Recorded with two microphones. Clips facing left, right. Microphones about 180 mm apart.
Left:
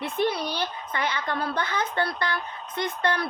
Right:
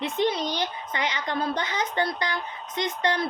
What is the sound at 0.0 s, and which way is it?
Speech, 20° right (ahead or behind).